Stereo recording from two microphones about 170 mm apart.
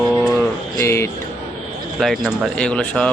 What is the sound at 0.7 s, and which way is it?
Mantra, 15° left (ahead or behind).